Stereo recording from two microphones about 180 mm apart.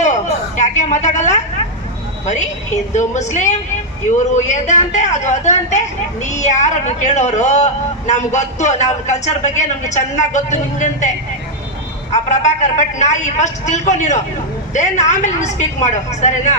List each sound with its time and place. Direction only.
0.0 s a sound: 40° left (ahead or behind)
2.9 s speech: 40° left (ahead or behind)
12.1 s speech: 40° left (ahead or behind)